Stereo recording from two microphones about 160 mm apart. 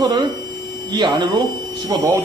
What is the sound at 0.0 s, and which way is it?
Speech, 25° right (ahead or behind).